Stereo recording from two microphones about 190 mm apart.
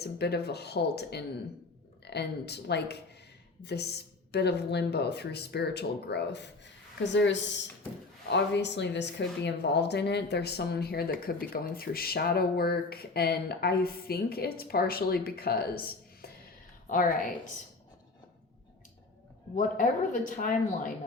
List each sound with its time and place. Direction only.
0.0 s speech: 60° left (ahead or behind)
19.5 s speech: 45° left (ahead or behind)